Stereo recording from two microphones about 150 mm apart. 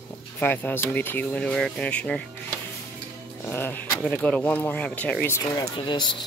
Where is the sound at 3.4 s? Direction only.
15° left (ahead or behind).